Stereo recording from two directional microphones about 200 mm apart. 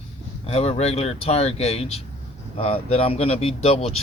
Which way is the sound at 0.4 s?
30° left (ahead or behind).